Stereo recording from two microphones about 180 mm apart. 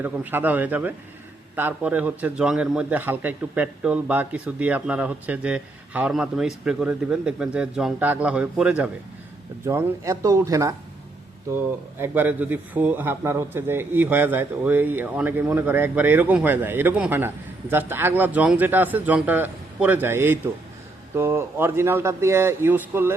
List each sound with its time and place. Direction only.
0.0 s speech: 10° right (ahead or behind)